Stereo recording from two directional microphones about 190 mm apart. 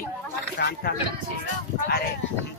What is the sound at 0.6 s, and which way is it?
Speech, 55° left (ahead or behind).